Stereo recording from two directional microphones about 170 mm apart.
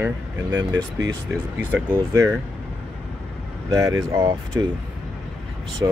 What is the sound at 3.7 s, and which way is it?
Speech, 25° right (ahead or behind).